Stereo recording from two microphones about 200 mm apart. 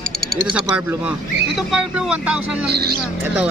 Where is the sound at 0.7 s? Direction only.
5° right (ahead or behind).